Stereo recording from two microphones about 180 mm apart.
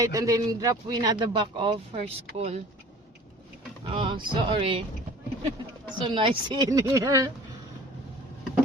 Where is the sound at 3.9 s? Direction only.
25° right (ahead or behind).